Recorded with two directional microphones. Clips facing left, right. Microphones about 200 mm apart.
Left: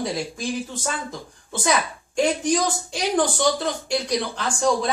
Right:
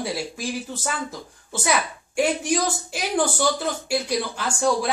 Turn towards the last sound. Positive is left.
turn(degrees=-5)  # may be behind; listen again after turning